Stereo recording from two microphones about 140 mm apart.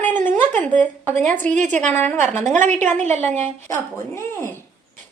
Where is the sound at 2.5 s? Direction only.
60° right (ahead or behind).